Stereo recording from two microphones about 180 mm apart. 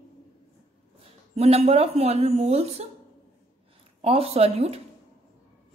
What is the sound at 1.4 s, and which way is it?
A woman's voice, 35° right (ahead or behind).